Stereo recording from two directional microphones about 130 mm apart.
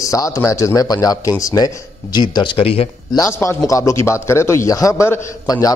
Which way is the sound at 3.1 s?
25° left (ahead or behind).